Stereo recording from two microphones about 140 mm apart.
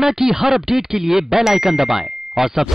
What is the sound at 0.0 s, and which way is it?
Speech, centre (ahead or behind).